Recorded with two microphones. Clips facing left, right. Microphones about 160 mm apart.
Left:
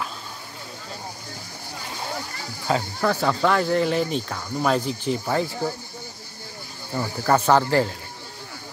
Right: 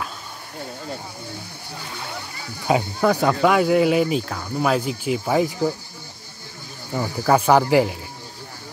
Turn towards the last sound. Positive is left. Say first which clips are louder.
# right 3 dB
turn(degrees=-15)  # may be behind; listen again after turning